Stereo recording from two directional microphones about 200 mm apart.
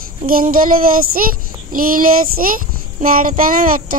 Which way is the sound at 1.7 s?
45° right (ahead or behind).